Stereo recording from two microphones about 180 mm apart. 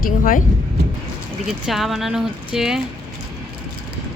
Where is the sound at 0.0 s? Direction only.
50° left (ahead or behind).